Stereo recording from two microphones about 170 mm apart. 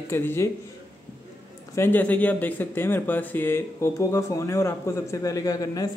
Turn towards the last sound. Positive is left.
turn(degrees=20)  # may be behind; listen again after turning